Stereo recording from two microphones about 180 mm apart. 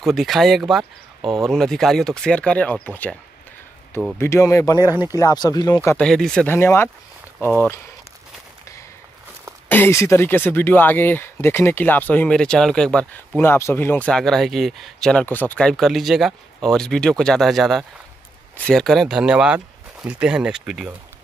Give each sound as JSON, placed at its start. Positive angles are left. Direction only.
{"t": 0.0, "sound": "speech", "side_deg": 0}
{"t": 4.2, "sound": "speech", "side_deg": 15}
{"t": 5.9, "sound": "speech", "side_deg": 5}
{"t": 9.7, "sound": "speech", "side_deg": 10}